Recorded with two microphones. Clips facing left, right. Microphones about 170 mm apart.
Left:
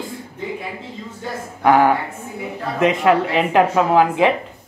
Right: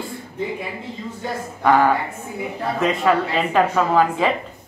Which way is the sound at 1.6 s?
15° left (ahead or behind).